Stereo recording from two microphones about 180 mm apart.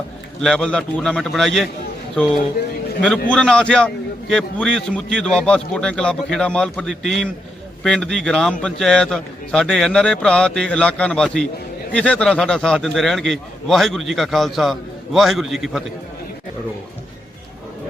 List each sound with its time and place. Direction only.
0.4 s a man's voice: 5° left (ahead or behind)
3.0 s a man's voice: 5° left (ahead or behind)